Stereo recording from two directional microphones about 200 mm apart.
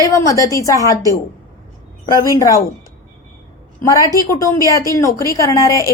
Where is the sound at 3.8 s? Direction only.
15° left (ahead or behind).